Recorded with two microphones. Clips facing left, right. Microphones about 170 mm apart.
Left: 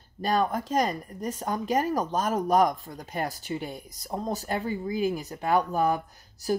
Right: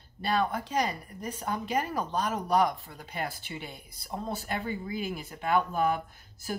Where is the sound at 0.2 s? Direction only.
45° left (ahead or behind).